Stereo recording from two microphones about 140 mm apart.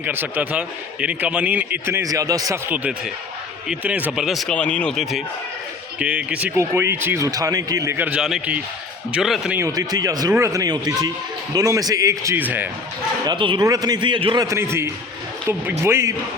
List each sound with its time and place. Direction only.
0.0 s a man's voice: 15° right (ahead or behind)
2.6 s a man's voice: 10° right (ahead or behind)
6.0 s speech: 10° right (ahead or behind); by 7.9 s 25° right (ahead or behind)
7.9 s a man's voice: 10° right (ahead or behind)
9.6 s speech: 25° right (ahead or behind)
13.2 s speech: 35° right (ahead or behind)
14.4 s speech: 20° right (ahead or behind)